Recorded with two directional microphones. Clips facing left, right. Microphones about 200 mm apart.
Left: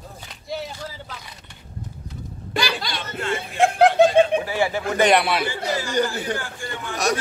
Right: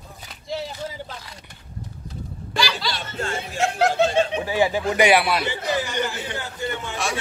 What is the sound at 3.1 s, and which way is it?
Chuckle, 45° right (ahead or behind).